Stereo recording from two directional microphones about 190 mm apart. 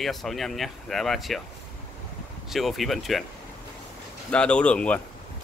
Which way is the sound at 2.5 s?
Centre (ahead or behind).